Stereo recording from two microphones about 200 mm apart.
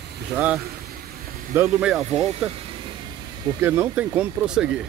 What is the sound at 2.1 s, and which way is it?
Speech, 30° right (ahead or behind).